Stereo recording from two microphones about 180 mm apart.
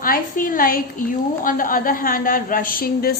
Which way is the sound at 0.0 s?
50° left (ahead or behind).